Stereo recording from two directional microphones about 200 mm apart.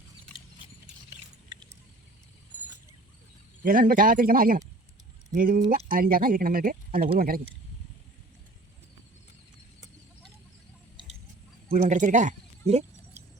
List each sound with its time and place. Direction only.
3.6 s speech: 45° right (ahead or behind)
11.7 s speech: 35° right (ahead or behind)